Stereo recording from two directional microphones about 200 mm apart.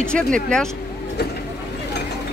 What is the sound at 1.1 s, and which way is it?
Vehicle, 55° left (ahead or behind).